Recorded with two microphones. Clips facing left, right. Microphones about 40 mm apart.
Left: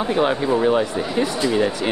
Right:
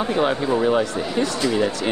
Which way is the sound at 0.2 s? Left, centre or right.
Centre.